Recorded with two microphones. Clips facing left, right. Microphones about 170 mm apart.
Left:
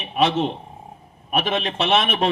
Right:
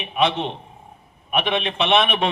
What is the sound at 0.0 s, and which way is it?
A man's voice, 40° left (ahead or behind).